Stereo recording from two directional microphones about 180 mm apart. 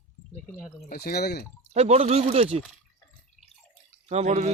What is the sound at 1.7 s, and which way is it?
Speech, 35° right (ahead or behind).